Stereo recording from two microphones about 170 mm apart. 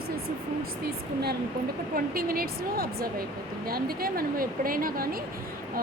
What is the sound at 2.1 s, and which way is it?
Speech, 60° right (ahead or behind).